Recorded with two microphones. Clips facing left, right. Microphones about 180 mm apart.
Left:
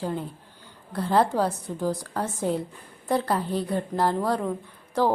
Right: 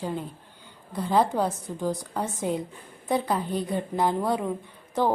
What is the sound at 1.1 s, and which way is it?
A woman's voice, centre (ahead or behind).